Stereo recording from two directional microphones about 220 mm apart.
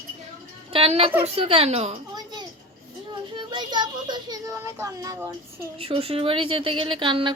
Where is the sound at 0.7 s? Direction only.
25° right (ahead or behind).